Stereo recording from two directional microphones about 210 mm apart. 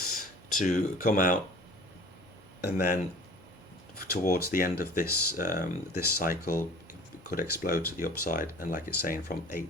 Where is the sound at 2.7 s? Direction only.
45° left (ahead or behind).